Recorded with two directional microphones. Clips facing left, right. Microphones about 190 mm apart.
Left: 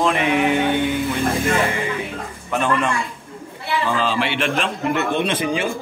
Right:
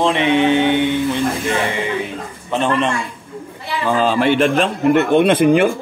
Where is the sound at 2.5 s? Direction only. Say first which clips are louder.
Right 3 dB; 25° right (ahead or behind).